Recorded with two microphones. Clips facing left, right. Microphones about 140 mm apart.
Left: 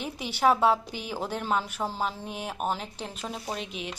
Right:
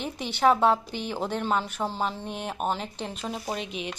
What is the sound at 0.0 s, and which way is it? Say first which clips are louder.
A woman's voice: right 2 dB; 5° left (ahead or behind).